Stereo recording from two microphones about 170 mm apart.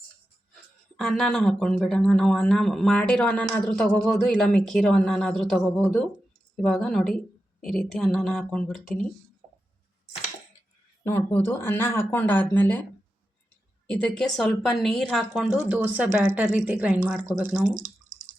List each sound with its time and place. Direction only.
0.9 s speech: 5° left (ahead or behind)
11.0 s speech: 15° left (ahead or behind)
13.9 s a woman's voice: 5° left (ahead or behind)